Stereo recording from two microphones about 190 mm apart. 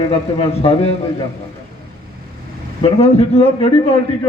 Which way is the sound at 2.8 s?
30° left (ahead or behind).